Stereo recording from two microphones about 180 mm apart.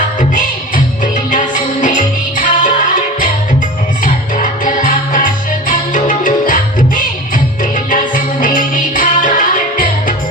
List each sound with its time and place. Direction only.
1.0 s music: 45° left (ahead or behind)